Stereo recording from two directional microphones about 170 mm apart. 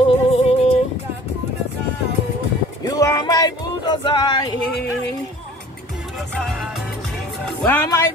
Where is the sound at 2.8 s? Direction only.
20° left (ahead or behind).